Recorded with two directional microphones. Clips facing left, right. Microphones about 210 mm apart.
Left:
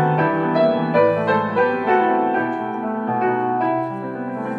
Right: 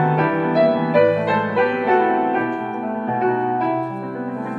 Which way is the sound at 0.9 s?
Centre (ahead or behind).